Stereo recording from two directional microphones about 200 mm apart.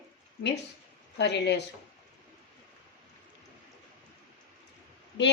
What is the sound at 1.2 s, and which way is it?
Speech, 60° left (ahead or behind).